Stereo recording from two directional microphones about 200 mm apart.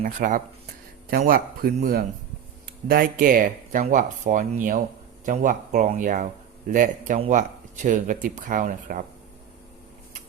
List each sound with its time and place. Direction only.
0.0 s speech: 40° right (ahead or behind)